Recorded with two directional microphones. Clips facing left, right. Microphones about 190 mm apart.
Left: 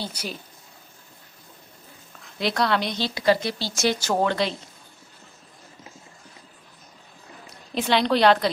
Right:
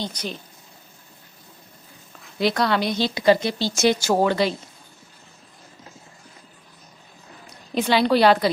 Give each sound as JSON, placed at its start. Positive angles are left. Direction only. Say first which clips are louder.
{"t": 0.0, "sound": "speech", "louder": "right 3 dB", "side_deg": 10}
{"t": 2.3, "sound": "a woman's voice", "louder": "right 2 dB", "side_deg": 0}
{"t": 3.0, "sound": "a woman's voice", "louder": "right 5 dB", "side_deg": -20}
{"t": 7.7, "sound": "a woman's voice", "louder": "right 3 dB", "side_deg": 0}